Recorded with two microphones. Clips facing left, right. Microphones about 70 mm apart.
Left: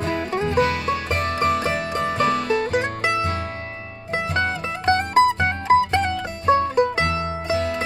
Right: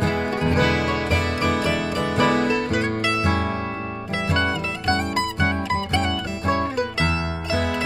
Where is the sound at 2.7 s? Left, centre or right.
Left.